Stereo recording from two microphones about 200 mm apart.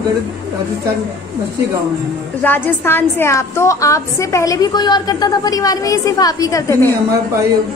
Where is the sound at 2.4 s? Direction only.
10° left (ahead or behind).